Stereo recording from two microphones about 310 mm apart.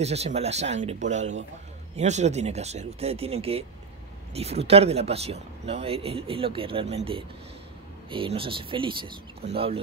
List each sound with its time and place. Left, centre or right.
0.0 s speech: centre
8.1 s speech: centre